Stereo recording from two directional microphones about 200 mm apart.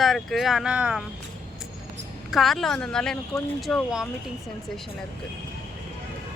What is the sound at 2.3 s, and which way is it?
A woman's voice, centre (ahead or behind).